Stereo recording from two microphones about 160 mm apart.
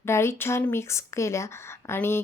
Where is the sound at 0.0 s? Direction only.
15° left (ahead or behind).